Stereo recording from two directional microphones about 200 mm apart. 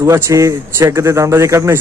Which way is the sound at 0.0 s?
15° right (ahead or behind).